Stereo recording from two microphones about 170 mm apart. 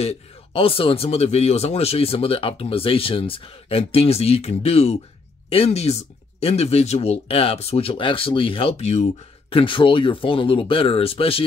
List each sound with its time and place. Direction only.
0.0 s speech: 35° left (ahead or behind)